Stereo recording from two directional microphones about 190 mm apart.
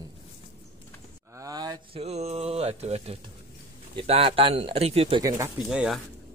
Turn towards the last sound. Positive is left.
turn(degrees=-5)  # may be behind; listen again after turning